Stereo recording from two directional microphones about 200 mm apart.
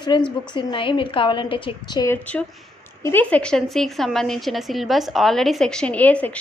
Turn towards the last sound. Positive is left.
turn(degrees=10)  # may be behind; listen again after turning